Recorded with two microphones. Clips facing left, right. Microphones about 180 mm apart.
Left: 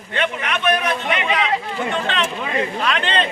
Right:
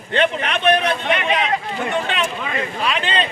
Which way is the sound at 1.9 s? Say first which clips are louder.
Right 1 dB; 10° right (ahead or behind).